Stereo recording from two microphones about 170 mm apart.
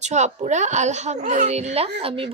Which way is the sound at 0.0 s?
45° right (ahead or behind).